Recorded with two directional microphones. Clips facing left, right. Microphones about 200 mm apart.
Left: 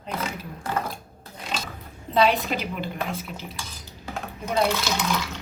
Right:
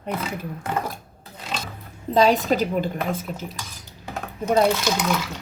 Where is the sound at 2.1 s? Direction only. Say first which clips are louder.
Right 4 dB; 40° right (ahead or behind).